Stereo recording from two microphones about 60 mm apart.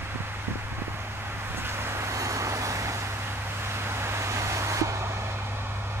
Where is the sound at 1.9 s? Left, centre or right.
Right.